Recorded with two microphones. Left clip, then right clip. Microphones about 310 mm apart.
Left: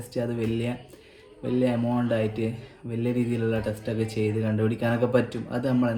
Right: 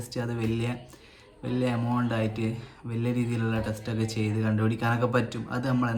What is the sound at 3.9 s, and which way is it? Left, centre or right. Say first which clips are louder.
Speech: left 5 dB; centre.